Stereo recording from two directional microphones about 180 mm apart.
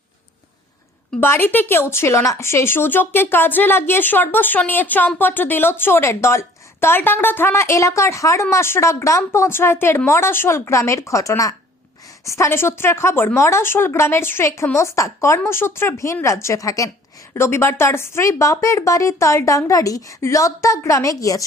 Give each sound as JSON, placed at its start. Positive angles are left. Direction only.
{"t": 1.2, "sound": "speech", "side_deg": 10}